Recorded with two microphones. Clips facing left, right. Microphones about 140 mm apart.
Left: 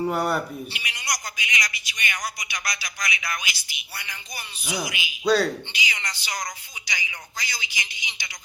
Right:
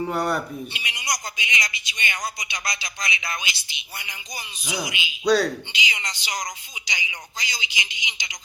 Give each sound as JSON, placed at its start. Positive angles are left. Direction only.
{"t": 0.0, "sound": "speech", "side_deg": 0}
{"t": 0.7, "sound": "a man's voice", "side_deg": -20}
{"t": 5.2, "sound": "speech", "side_deg": 0}
{"t": 5.7, "sound": "a man's voice", "side_deg": -20}